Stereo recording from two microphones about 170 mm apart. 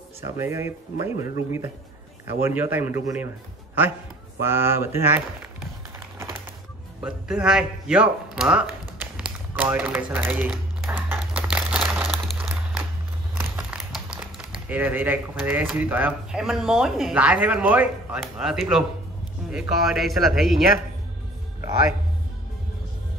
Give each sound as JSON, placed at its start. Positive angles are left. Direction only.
{"t": 0.4, "sound": "speech", "side_deg": -15}
{"t": 4.4, "sound": "speech", "side_deg": -15}
{"t": 7.0, "sound": "speech", "side_deg": -5}
{"t": 10.1, "sound": "crumpling", "side_deg": -10}
{"t": 13.4, "sound": "a sound", "side_deg": -5}
{"t": 14.7, "sound": "a man's voice", "side_deg": -10}
{"t": 19.4, "sound": "a sound", "side_deg": 0}
{"t": 19.8, "sound": "a man's voice", "side_deg": 0}